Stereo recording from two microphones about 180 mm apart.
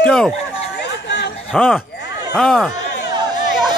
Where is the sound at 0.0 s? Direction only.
5° left (ahead or behind).